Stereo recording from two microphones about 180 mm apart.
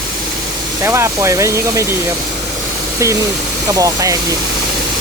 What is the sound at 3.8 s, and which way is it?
Speech, 20° right (ahead or behind).